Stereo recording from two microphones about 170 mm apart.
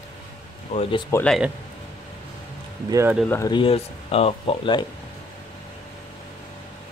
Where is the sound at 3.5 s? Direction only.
30° left (ahead or behind).